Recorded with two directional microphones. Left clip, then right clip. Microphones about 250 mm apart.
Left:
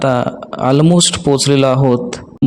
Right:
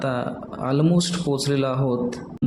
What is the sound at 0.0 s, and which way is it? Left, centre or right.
A man's voice, left.